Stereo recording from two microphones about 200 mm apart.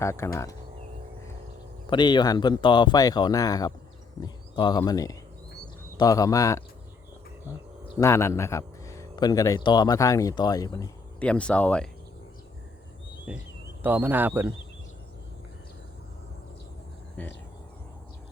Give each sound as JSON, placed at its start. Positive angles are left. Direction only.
{"t": 0.0, "sound": "a man's voice", "side_deg": 15}
{"t": 1.9, "sound": "a man's voice", "side_deg": 20}
{"t": 7.9, "sound": "a man's voice", "side_deg": 15}
{"t": 11.2, "sound": "speech", "side_deg": 5}
{"t": 13.3, "sound": "speech", "side_deg": -5}
{"t": 17.2, "sound": "a man's voice", "side_deg": 10}